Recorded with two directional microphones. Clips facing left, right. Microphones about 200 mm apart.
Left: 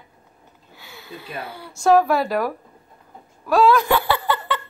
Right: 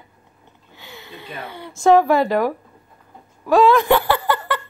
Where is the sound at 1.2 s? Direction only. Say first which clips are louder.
Even; 10° left (ahead or behind).